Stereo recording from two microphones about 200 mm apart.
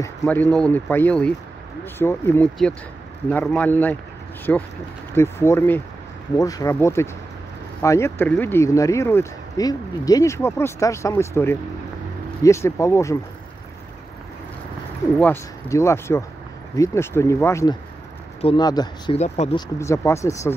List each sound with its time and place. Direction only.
0.2 s speech: 5° left (ahead or behind)
15.1 s speech: 10° left (ahead or behind)
19.1 s speech: 35° left (ahead or behind)
19.5 s speech: 15° left (ahead or behind)